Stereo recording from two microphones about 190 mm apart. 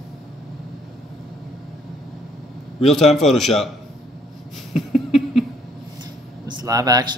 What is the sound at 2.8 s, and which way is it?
Speech, centre (ahead or behind).